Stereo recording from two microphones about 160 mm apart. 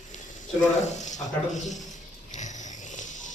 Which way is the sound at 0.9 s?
50° left (ahead or behind).